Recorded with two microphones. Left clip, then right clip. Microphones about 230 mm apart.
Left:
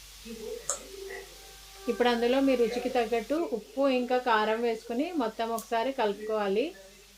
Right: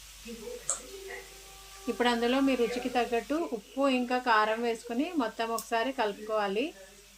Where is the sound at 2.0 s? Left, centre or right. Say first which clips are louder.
Left 2 dB; right.